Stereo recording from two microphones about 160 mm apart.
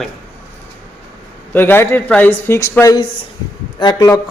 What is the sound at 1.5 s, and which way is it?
A man's voice, 15° left (ahead or behind).